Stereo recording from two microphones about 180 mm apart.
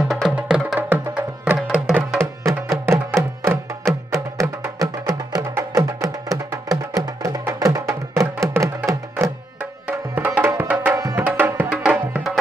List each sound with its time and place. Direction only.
0.1 s music: 5° right (ahead or behind)
2.9 s music: 15° right (ahead or behind)